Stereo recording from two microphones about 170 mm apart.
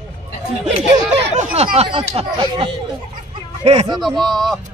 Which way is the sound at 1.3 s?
40° right (ahead or behind).